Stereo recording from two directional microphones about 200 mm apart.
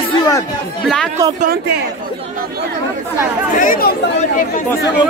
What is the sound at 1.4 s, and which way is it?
Speech, 50° right (ahead or behind).